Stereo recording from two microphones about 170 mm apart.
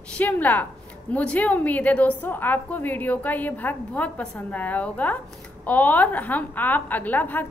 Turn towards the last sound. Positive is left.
turn(degrees=10)  # may be behind; listen again after turning